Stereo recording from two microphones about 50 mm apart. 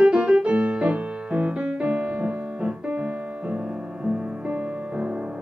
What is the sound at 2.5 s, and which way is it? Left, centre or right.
Piano, right.